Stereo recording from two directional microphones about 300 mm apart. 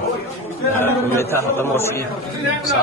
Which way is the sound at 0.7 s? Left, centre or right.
Centre.